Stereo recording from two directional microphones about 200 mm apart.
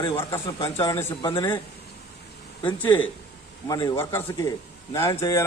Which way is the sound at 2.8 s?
10° left (ahead or behind).